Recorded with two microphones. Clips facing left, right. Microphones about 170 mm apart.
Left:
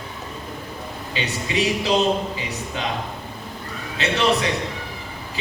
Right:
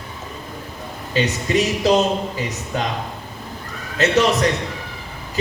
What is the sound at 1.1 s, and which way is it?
A man's voice, 40° right (ahead or behind).